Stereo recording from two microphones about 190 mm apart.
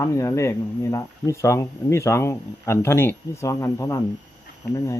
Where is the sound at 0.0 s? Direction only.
15° left (ahead or behind).